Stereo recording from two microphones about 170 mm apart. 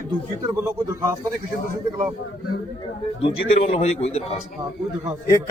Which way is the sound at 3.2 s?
35° left (ahead or behind).